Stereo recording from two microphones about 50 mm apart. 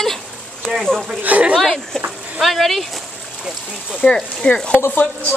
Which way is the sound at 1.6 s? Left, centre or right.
Centre.